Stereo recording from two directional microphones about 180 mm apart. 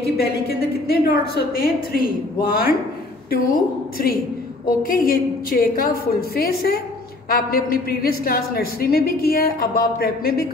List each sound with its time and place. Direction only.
0.0 s a woman's voice: 60° left (ahead or behind)